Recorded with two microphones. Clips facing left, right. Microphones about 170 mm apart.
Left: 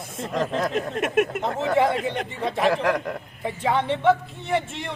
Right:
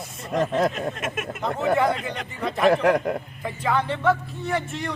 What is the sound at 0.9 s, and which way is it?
Speech, 65° left (ahead or behind).